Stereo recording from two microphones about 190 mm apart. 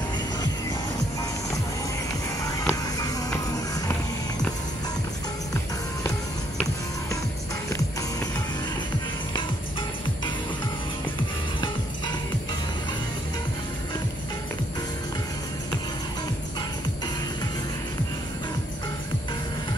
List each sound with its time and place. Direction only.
2.4 s music: 20° left (ahead or behind)
9.3 s music: 25° left (ahead or behind)